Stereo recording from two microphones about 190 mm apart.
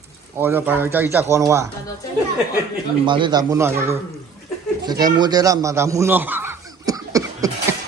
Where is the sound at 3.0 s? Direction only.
25° right (ahead or behind).